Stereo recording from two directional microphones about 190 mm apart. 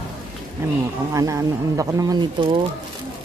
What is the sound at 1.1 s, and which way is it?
Speech, 15° right (ahead or behind).